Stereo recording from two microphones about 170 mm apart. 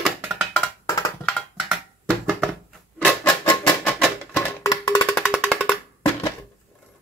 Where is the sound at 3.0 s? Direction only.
10° left (ahead or behind).